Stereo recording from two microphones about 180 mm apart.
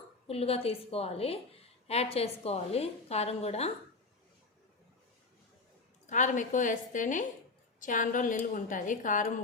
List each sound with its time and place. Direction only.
0.3 s a woman's voice: 35° left (ahead or behind)
6.1 s a woman's voice: 45° left (ahead or behind)